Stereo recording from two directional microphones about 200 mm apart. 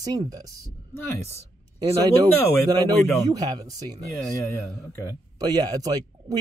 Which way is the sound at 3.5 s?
20° right (ahead or behind).